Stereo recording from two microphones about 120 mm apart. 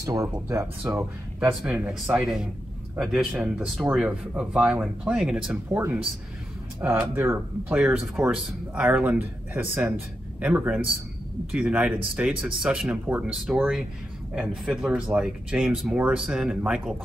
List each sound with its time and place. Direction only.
0.0 s speech: 25° right (ahead or behind)
1.7 s speech: 5° right (ahead or behind)